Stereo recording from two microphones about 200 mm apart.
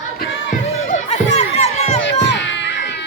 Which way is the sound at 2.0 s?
65° left (ahead or behind).